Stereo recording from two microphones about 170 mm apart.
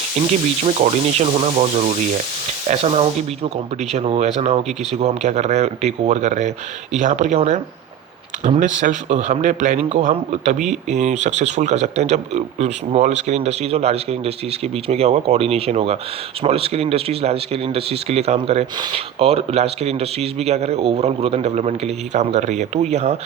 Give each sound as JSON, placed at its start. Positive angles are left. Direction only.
{"t": 0.6, "sound": "a man's voice", "side_deg": -40}